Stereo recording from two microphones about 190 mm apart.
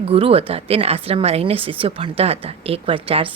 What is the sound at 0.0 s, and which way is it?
A woman's voice, 30° right (ahead or behind).